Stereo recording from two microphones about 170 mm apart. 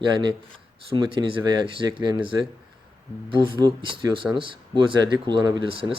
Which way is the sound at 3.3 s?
25° right (ahead or behind).